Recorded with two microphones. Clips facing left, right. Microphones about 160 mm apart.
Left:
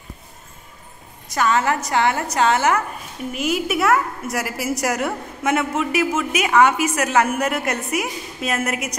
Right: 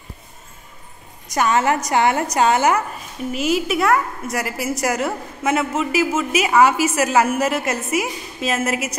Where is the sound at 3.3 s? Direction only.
Centre (ahead or behind).